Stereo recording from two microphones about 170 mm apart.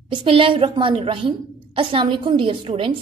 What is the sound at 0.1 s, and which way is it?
A woman's voice, 30° right (ahead or behind).